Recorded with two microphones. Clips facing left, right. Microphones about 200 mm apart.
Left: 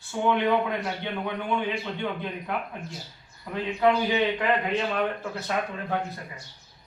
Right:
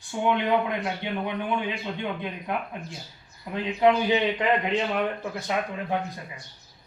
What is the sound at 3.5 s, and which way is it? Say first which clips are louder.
A man's voice: right 2 dB; 20° right (ahead or behind).